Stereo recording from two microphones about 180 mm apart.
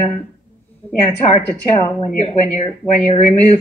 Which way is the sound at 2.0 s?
35° left (ahead or behind).